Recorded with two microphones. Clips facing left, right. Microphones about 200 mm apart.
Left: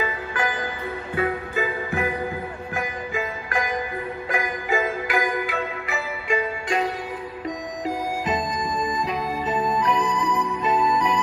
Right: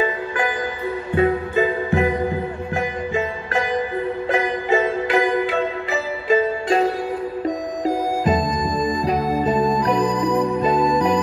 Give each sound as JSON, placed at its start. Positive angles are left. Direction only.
{"t": 1.1, "sound": "music", "side_deg": -30}